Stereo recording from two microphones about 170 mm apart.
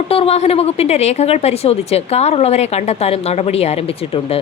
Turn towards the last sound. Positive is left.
turn(degrees=35)  # may be behind; listen again after turning